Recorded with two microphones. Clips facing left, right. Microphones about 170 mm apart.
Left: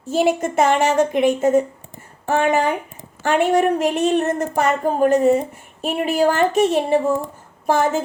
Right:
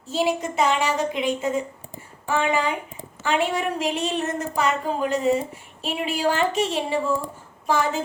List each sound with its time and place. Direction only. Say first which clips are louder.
0.1 s speech: left 5 dB; 50° left (ahead or behind)